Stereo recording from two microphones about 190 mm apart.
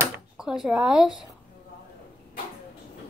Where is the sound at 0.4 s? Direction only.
Centre (ahead or behind).